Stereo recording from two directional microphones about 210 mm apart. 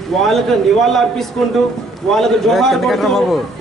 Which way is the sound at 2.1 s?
Centre (ahead or behind).